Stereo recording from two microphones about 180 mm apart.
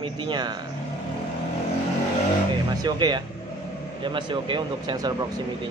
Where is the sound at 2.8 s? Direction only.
20° right (ahead or behind).